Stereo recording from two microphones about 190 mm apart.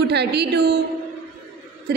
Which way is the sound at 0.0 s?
60° right (ahead or behind).